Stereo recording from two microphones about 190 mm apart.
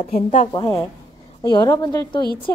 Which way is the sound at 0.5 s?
15° left (ahead or behind).